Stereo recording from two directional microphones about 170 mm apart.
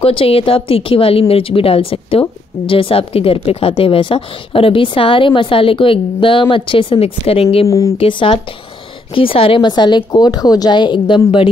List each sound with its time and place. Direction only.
0.0 s a woman's voice: 35° left (ahead or behind)
7.6 s speech: 20° left (ahead or behind)
8.0 s a woman's voice: 30° left (ahead or behind)